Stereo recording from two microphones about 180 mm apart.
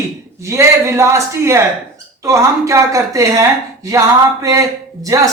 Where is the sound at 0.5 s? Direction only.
15° right (ahead or behind).